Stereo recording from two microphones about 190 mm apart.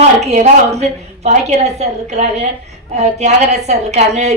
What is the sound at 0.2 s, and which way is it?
A woman's voice, 35° right (ahead or behind).